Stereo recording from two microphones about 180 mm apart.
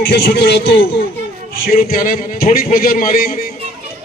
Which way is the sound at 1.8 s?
50° left (ahead or behind).